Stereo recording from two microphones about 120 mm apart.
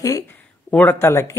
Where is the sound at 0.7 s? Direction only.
15° left (ahead or behind).